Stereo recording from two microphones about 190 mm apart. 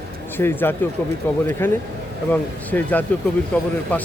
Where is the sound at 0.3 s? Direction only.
10° left (ahead or behind).